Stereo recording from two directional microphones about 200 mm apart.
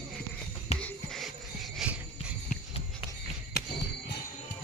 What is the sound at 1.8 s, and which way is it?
Jingle bell, centre (ahead or behind).